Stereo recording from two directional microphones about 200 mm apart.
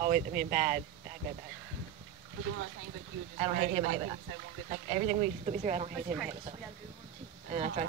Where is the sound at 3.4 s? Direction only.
35° right (ahead or behind).